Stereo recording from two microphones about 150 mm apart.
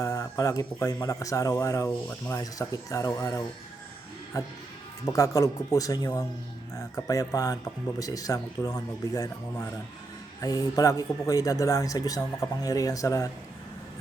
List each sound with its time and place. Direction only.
0.0 s speech: 20° left (ahead or behind)